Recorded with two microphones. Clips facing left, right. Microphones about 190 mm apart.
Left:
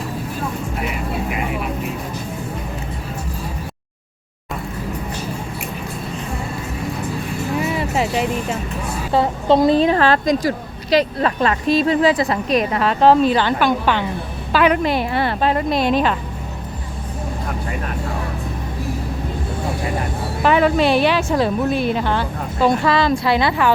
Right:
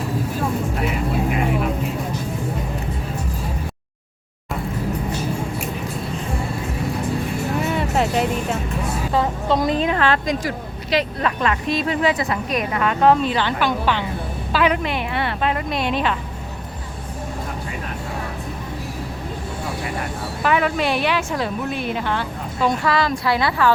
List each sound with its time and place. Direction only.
7.6 s music: centre (ahead or behind)
9.1 s a woman's voice: 30° left (ahead or behind); by 14.8 s 55° left (ahead or behind)
14.8 s a woman's voice: 35° left (ahead or behind)
20.4 s a woman's voice: 30° left (ahead or behind)